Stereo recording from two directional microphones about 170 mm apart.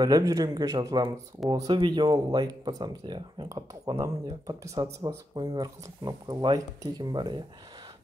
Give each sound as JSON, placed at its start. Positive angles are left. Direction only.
{"t": 0.0, "sound": "speech", "side_deg": -20}